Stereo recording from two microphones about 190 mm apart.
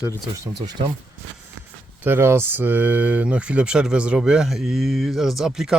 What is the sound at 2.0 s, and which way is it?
Speech, 10° right (ahead or behind).